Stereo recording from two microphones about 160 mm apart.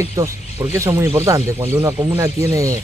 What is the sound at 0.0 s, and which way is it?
Speech, 20° right (ahead or behind).